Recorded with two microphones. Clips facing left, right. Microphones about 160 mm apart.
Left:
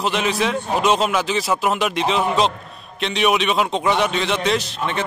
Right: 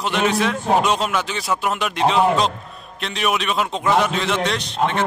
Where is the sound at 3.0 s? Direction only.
Centre (ahead or behind).